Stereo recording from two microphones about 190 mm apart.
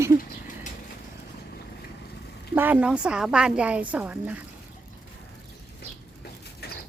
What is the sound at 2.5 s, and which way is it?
Speech, 10° right (ahead or behind).